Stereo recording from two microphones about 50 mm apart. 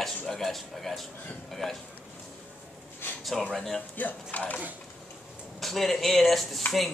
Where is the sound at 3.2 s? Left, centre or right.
Centre.